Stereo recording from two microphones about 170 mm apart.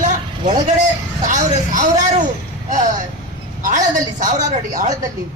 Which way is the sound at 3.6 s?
50° right (ahead or behind).